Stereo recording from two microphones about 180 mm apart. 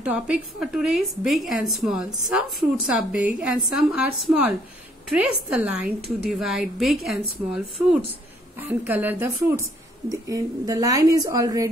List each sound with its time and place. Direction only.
0.0 s a woman's voice: 5° right (ahead or behind)